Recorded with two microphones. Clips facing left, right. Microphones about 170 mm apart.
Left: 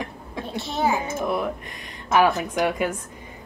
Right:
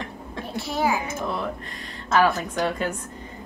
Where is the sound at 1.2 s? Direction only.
15° left (ahead or behind).